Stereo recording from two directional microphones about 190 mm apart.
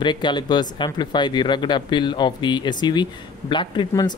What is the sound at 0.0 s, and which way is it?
Speech, 25° left (ahead or behind).